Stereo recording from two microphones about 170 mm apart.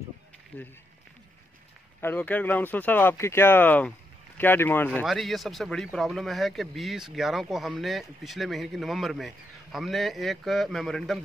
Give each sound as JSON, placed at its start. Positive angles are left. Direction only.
{"t": 2.0, "sound": "speech", "side_deg": 10}